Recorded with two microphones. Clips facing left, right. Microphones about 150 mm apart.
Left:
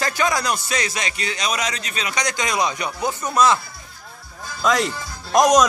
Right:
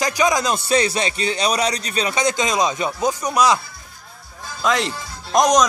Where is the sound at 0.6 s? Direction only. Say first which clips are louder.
Right 7 dB; 30° right (ahead or behind); by 3.6 s 15° right (ahead or behind).